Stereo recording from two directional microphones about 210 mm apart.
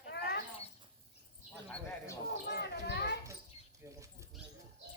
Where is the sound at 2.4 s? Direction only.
50° left (ahead or behind).